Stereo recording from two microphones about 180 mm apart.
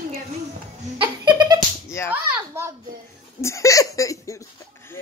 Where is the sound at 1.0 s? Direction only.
25° right (ahead or behind).